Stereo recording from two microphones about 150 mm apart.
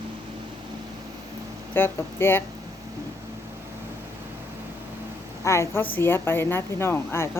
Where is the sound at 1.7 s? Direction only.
15° left (ahead or behind).